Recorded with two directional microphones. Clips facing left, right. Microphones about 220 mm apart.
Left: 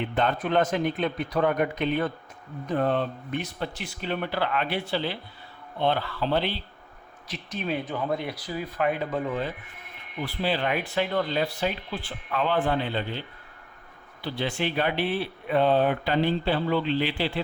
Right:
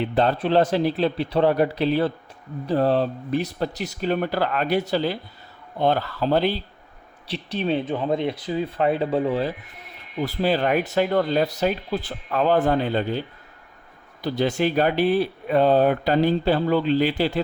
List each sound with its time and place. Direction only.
0.0 s speech: 35° right (ahead or behind)